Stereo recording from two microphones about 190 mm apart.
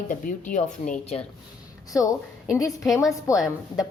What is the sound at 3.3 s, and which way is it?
Speech, 15° left (ahead or behind).